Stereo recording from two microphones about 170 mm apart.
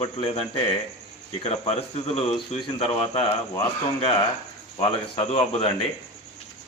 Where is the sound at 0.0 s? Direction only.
35° left (ahead or behind).